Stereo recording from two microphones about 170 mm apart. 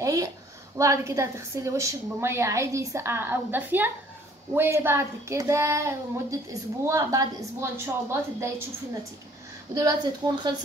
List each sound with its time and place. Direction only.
0.0 s a sound: 20° right (ahead or behind)
0.7 s a woman's voice: 20° right (ahead or behind)
9.8 s a woman's voice: 25° right (ahead or behind)